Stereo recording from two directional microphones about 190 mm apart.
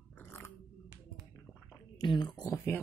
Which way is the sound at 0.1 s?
10° left (ahead or behind).